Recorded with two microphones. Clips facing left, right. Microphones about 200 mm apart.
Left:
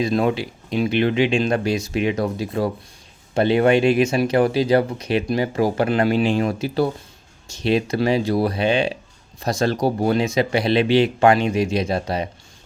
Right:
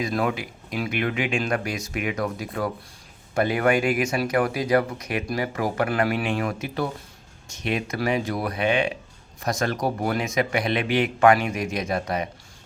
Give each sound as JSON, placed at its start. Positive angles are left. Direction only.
{"t": 0.0, "sound": "speech", "side_deg": 25}